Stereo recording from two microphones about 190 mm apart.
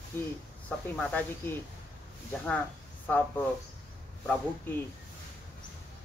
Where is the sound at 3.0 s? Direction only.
10° left (ahead or behind).